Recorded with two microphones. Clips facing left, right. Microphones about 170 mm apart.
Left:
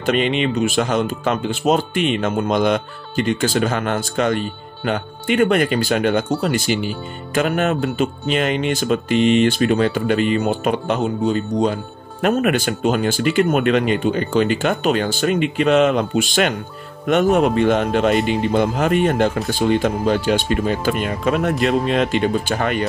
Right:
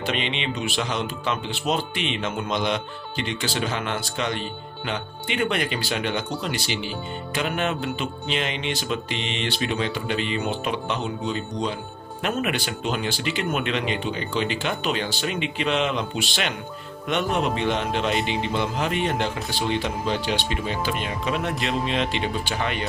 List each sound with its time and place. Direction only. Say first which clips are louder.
0.0 s speech: left 9 dB; 45° left (ahead or behind)